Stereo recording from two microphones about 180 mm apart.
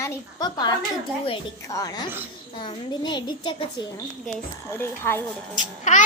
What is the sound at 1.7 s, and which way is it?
A child's voice, 20° left (ahead or behind).